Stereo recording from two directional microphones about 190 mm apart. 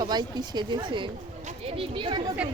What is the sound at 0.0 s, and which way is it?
Speech, 20° right (ahead or behind).